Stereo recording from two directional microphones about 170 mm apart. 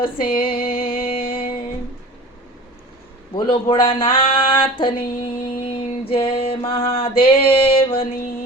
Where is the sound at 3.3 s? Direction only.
30° left (ahead or behind).